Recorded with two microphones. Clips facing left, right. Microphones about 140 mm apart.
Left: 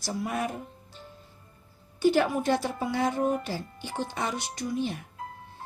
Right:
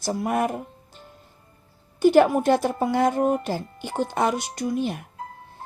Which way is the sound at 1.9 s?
50° right (ahead or behind).